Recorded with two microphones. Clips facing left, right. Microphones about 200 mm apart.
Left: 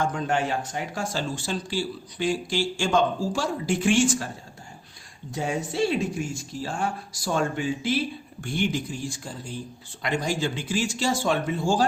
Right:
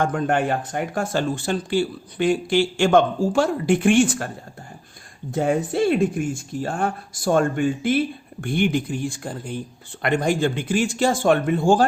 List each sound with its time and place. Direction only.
0.0 s speech: 55° right (ahead or behind)
5.3 s speech: 55° right (ahead or behind)